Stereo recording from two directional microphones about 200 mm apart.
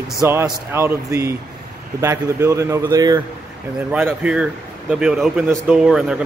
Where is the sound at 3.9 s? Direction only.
5° right (ahead or behind).